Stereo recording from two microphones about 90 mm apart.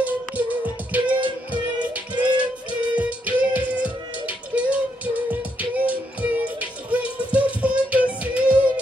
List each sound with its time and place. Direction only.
0.0 s music: 15° right (ahead or behind)